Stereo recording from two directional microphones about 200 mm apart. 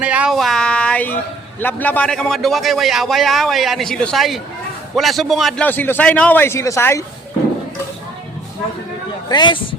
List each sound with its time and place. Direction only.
0.0 s a man's voice: 5° right (ahead or behind); by 7.0 s 15° left (ahead or behind)
9.3 s a man's voice: 25° left (ahead or behind)